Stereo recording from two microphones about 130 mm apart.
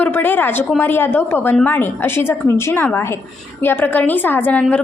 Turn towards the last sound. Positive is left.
turn(degrees=15)  # may be behind; listen again after turning